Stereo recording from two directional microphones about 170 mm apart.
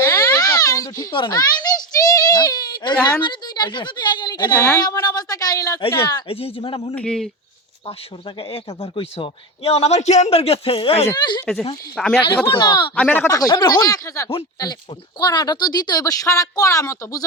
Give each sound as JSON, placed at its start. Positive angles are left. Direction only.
{"t": 0.0, "sound": "a sound", "side_deg": 15}
{"t": 3.2, "sound": "a woman's voice", "side_deg": 25}
{"t": 4.5, "sound": "speech", "side_deg": 10}
{"t": 4.8, "sound": "a woman's voice", "side_deg": 20}
{"t": 6.2, "sound": "a man's voice", "side_deg": 35}
{"t": 6.9, "sound": "speech", "side_deg": 5}
{"t": 8.4, "sound": "a man's voice", "side_deg": 35}
{"t": 11.9, "sound": "speech", "side_deg": 0}
{"t": 12.5, "sound": "a woman's voice", "side_deg": 25}
{"t": 13.0, "sound": "a woman's voice", "side_deg": 10}